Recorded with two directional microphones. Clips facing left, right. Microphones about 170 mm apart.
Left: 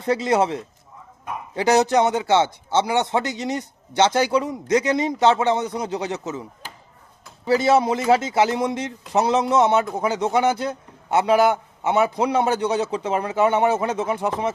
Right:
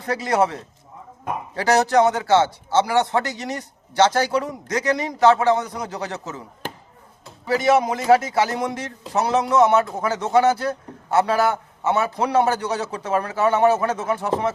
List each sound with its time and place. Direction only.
0.0 s a man's voice: 25° left (ahead or behind)
7.4 s a man's voice: 30° left (ahead or behind)